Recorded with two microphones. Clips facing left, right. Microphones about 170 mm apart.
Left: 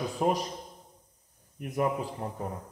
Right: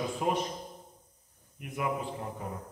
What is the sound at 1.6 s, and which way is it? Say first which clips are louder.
Speech: left 4 dB; 40° left (ahead or behind).